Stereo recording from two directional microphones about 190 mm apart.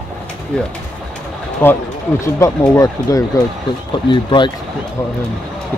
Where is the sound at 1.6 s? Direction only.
15° left (ahead or behind).